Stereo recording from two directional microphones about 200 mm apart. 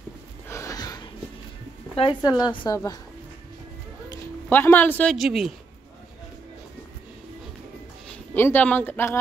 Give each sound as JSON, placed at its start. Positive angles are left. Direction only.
{"t": 0.5, "sound": "a sound", "side_deg": 15}
{"t": 2.0, "sound": "a woman's voice", "side_deg": 20}
{"t": 4.5, "sound": "a woman's voice", "side_deg": 10}
{"t": 8.4, "sound": "speech", "side_deg": 10}